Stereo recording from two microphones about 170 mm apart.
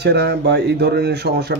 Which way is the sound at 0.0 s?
75° right (ahead or behind).